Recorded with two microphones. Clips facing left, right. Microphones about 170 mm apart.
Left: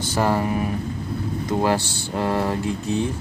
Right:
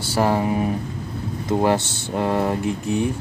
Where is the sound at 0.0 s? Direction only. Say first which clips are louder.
Right 1 dB; 10° right (ahead or behind).